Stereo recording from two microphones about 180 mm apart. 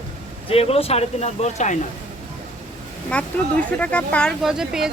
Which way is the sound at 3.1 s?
5° left (ahead or behind).